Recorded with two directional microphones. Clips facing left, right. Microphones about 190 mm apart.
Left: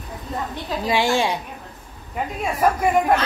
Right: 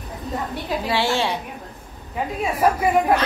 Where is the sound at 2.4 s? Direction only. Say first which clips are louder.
Even; 5° right (ahead or behind).